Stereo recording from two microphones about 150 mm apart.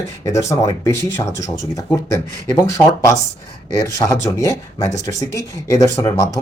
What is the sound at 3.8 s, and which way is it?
Speech, 20° left (ahead or behind).